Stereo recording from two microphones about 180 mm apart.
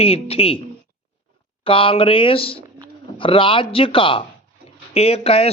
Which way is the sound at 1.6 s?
30° left (ahead or behind).